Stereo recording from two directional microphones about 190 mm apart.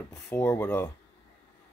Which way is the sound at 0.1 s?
15° left (ahead or behind).